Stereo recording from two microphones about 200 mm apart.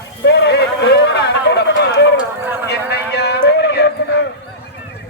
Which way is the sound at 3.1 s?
55° left (ahead or behind).